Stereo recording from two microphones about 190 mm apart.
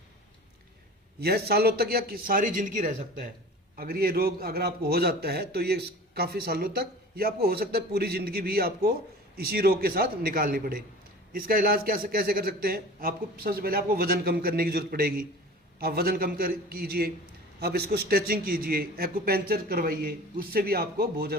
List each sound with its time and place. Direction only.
1.2 s a man's voice: 55° right (ahead or behind)